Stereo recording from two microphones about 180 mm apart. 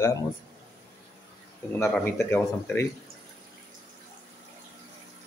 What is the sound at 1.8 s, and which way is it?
Speech, 10° left (ahead or behind).